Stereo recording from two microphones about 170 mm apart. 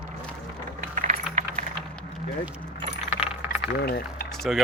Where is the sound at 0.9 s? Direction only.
50° right (ahead or behind).